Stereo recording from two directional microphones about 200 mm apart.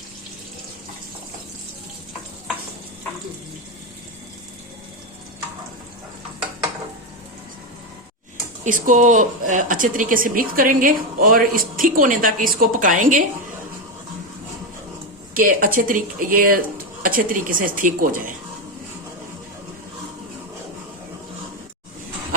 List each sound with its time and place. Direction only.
8.6 s a woman's voice: 40° right (ahead or behind)
15.4 s a woman's voice: 45° right (ahead or behind)